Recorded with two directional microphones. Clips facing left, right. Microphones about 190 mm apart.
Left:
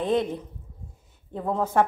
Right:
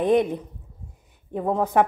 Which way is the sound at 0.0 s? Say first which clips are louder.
Right 5 dB; 15° right (ahead or behind).